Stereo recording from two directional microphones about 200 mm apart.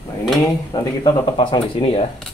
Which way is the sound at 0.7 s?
25° left (ahead or behind).